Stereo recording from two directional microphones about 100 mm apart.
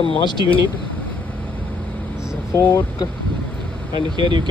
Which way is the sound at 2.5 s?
20° left (ahead or behind).